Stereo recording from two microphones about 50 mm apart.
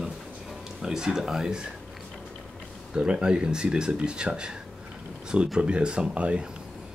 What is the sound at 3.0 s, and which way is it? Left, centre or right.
Speech, centre.